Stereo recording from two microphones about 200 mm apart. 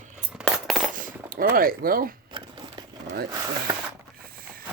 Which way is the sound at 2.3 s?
25° right (ahead or behind).